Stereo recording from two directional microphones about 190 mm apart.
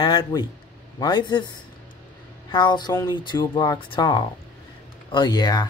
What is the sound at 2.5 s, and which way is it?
Speech, 25° left (ahead or behind).